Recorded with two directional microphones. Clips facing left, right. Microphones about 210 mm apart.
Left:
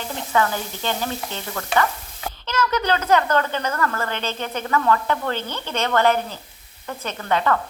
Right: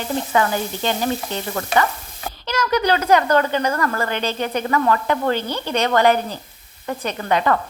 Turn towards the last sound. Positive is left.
turn(degrees=-15)  # may be behind; listen again after turning